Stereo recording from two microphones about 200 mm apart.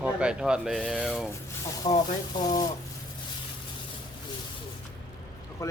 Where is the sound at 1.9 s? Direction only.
25° left (ahead or behind).